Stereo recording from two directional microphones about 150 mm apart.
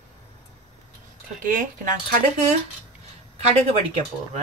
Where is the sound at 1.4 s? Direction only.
60° right (ahead or behind).